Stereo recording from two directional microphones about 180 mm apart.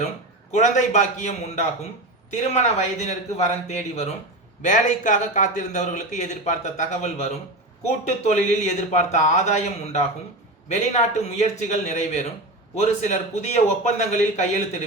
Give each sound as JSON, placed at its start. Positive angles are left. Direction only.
{"t": 0.5, "sound": "speech", "side_deg": 45}